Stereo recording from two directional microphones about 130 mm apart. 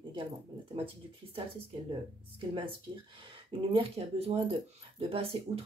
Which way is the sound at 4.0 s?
45° right (ahead or behind).